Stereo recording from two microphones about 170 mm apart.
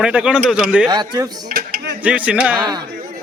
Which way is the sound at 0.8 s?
25° right (ahead or behind).